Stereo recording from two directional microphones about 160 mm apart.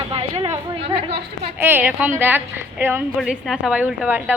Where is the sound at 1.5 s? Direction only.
15° right (ahead or behind).